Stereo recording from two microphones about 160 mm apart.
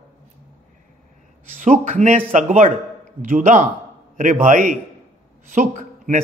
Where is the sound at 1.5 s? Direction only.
50° right (ahead or behind).